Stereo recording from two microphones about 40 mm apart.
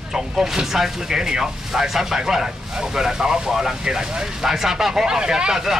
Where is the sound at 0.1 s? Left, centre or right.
Centre.